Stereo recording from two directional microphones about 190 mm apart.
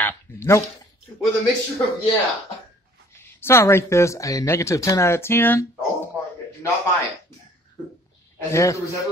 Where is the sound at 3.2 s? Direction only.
10° left (ahead or behind).